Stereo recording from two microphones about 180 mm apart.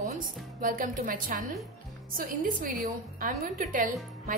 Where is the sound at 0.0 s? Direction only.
50° right (ahead or behind).